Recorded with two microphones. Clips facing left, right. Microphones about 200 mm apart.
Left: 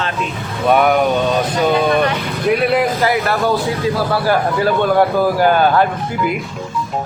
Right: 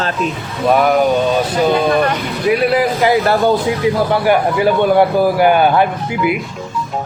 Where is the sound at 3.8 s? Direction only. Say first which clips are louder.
Right 3 dB; 15° right (ahead or behind).